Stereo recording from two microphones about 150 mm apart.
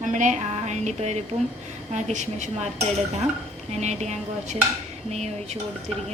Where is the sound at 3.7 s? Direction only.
50° right (ahead or behind).